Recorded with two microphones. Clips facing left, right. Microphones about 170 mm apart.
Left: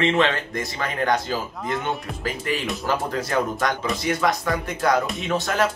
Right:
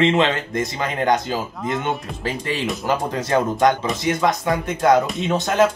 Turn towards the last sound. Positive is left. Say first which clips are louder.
# right 5 dB
turn(degrees=-20)  # may be behind; listen again after turning